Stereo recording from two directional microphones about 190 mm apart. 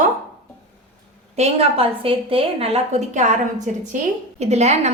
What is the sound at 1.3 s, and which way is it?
A woman's voice, 35° right (ahead or behind).